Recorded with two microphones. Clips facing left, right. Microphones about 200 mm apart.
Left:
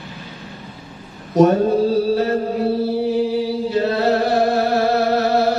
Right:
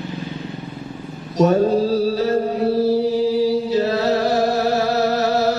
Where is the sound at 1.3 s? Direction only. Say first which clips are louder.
Left 3 dB; 55° left (ahead or behind).